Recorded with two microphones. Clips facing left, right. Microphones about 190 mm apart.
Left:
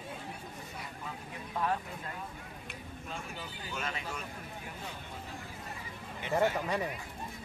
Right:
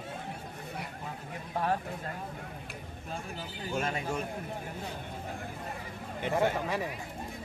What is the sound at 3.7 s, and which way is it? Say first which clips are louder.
Speech: right 7 dB; 50° right (ahead or behind).